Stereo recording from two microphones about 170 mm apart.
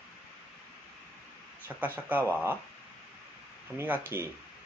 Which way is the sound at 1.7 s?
10° right (ahead or behind).